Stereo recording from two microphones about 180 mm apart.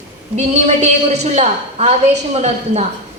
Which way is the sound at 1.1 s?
40° right (ahead or behind).